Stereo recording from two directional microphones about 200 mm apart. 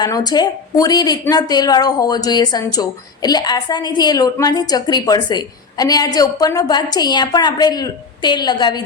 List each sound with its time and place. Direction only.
0.0 s a woman's voice: 20° left (ahead or behind)